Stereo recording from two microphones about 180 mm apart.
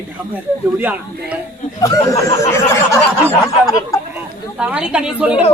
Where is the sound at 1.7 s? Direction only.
20° left (ahead or behind).